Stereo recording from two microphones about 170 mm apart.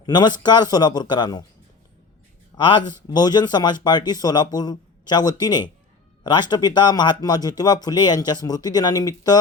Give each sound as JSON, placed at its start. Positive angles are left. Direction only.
{"t": 0.0, "sound": "speech", "side_deg": 25}
{"t": 2.6, "sound": "speech", "side_deg": 25}